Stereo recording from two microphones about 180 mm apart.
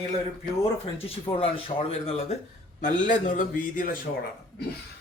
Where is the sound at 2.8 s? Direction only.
45° left (ahead or behind).